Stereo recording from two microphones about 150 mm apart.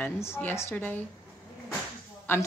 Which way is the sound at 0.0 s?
15° left (ahead or behind).